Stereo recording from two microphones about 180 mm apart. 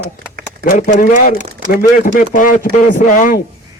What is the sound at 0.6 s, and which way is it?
A man's voice, 50° left (ahead or behind).